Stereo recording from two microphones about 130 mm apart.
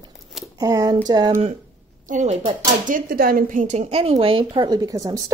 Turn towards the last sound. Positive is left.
turn(degrees=-25)  # may be behind; listen again after turning